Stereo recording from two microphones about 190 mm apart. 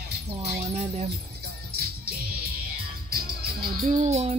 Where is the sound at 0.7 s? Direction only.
35° right (ahead or behind).